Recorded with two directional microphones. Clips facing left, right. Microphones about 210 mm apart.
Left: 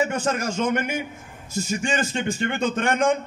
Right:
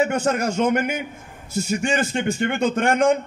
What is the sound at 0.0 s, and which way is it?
A man's voice, 65° right (ahead or behind).